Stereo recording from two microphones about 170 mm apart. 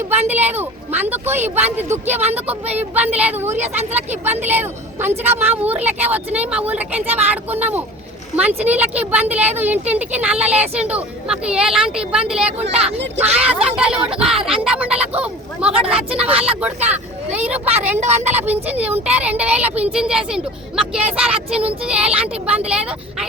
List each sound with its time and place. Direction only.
0.3 s speech: 10° right (ahead or behind)
13.7 s a sound: 5° right (ahead or behind)
14.6 s speech: 5° right (ahead or behind)
15.8 s speech: 35° right (ahead or behind)
16.1 s speech: 5° right (ahead or behind)